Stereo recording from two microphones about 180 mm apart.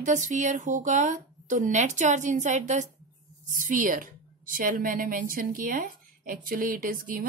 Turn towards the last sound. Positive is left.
turn(degrees=-50)  # may be behind; listen again after turning